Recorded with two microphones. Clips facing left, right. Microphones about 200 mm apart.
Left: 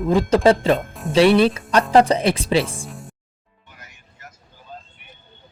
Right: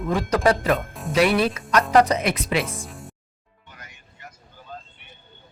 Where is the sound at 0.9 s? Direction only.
Centre (ahead or behind).